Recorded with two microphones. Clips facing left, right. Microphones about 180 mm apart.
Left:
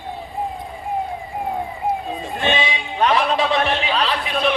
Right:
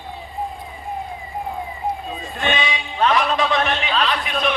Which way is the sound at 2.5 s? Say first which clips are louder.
Left 1 dB; 25° left (ahead or behind).